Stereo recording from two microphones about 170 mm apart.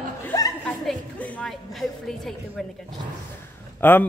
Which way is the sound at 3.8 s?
10° left (ahead or behind).